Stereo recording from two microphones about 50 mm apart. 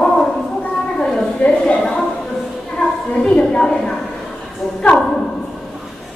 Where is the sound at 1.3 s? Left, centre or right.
Left.